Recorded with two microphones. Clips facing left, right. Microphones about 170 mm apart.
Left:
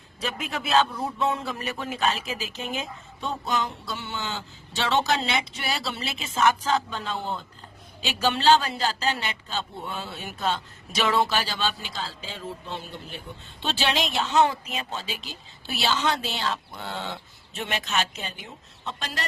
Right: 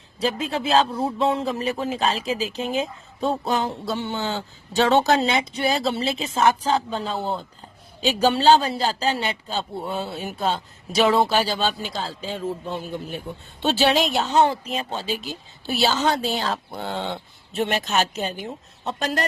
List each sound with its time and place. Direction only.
0.2 s a man's voice: 30° right (ahead or behind); by 19.2 s 45° right (ahead or behind)